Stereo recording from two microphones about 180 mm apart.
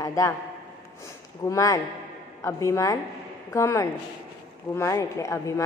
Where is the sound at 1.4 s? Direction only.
20° left (ahead or behind).